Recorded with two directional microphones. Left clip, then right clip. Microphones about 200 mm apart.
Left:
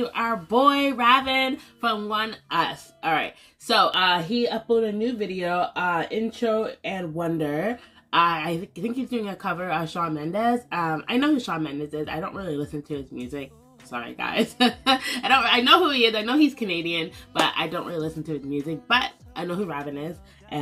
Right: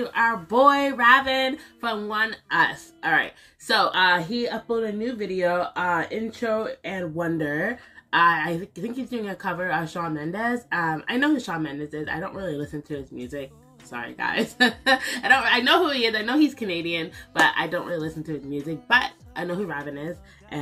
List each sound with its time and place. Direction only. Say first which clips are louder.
0.0 s speech: right 3 dB; 5° left (ahead or behind)